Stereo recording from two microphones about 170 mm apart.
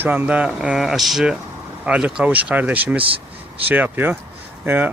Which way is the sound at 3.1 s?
35° right (ahead or behind).